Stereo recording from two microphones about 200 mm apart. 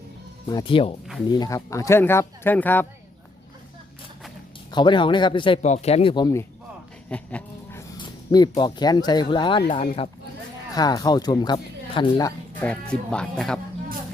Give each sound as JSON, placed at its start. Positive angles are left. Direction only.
{"t": 0.4, "sound": "speech", "side_deg": 25}
{"t": 4.7, "sound": "speech", "side_deg": 25}
{"t": 7.1, "sound": "dog", "side_deg": 5}
{"t": 7.9, "sound": "speech", "side_deg": 20}
{"t": 10.8, "sound": "speech", "side_deg": 20}
{"t": 12.6, "sound": "speech", "side_deg": 5}